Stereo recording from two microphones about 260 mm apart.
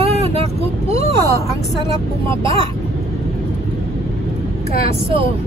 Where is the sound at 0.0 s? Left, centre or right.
Right.